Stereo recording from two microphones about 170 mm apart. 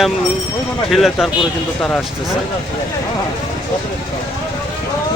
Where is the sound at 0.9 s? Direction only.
Centre (ahead or behind).